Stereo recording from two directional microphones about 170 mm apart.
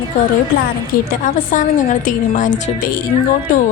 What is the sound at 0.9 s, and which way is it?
A woman's voice, 60° left (ahead or behind).